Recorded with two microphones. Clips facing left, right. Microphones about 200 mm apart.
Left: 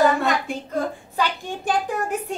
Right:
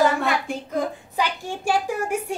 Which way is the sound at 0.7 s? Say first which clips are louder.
Even; 10° right (ahead or behind).